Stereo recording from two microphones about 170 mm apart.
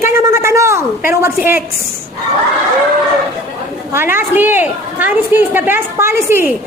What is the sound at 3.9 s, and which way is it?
A woman's voice, 15° right (ahead or behind).